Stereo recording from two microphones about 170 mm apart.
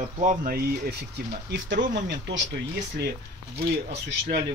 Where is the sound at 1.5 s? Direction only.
90° right.